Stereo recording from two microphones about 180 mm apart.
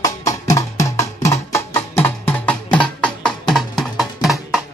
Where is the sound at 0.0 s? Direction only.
20° left (ahead or behind).